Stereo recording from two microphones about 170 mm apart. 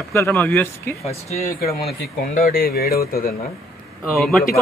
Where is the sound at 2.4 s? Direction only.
60° left (ahead or behind).